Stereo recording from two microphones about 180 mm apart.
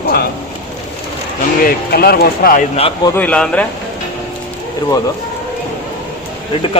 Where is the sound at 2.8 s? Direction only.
30° left (ahead or behind).